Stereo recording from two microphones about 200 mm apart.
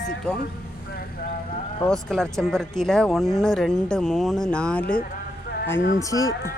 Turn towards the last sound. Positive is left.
turn(degrees=15)  # may be behind; listen again after turning